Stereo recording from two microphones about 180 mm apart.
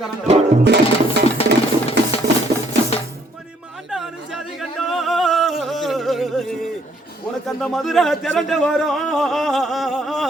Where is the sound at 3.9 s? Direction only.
Centre (ahead or behind).